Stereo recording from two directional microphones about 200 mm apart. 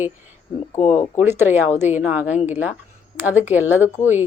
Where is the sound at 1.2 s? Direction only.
10° right (ahead or behind).